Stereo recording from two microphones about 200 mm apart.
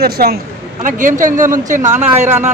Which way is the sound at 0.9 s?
40° right (ahead or behind).